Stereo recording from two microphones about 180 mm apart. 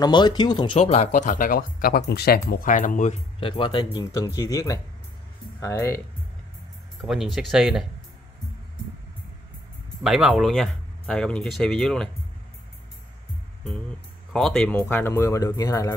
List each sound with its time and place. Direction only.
0.0 s speech: 25° left (ahead or behind)
0.7 s speech: 40° left (ahead or behind); by 2.4 s 60° left (ahead or behind)
2.5 s speech: 45° left (ahead or behind)
3.3 s speech: 30° left (ahead or behind)
7.0 s speech: centre (ahead or behind)
10.0 s speech: 5° right (ahead or behind)
14.3 s speech: 5° left (ahead or behind); by 15.9 s 20° left (ahead or behind)